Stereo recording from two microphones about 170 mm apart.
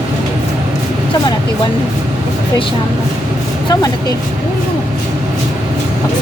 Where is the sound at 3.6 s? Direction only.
20° left (ahead or behind).